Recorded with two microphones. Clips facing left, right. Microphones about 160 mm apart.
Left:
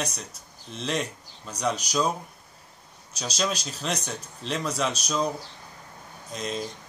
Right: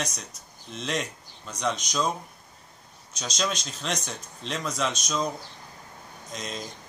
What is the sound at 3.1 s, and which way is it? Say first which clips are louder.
Speech: left 1 dB; 5° left (ahead or behind).